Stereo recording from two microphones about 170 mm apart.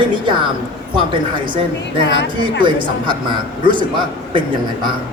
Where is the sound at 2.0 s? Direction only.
90° left.